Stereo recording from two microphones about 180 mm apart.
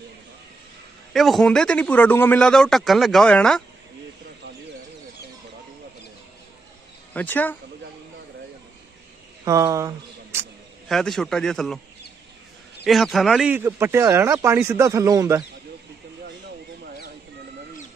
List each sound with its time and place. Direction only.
1.1 s a man's voice: centre (ahead or behind)
7.2 s speech: 10° left (ahead or behind)
9.4 s speech: 20° right (ahead or behind)
10.9 s a man's voice: centre (ahead or behind)
12.8 s speech: centre (ahead or behind); by 15.4 s 20° right (ahead or behind)